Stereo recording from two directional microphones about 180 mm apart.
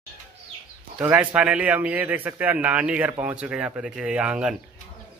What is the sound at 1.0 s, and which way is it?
A man's voice, 10° right (ahead or behind).